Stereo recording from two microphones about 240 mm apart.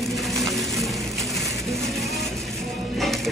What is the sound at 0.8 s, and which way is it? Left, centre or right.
Ratchet, centre.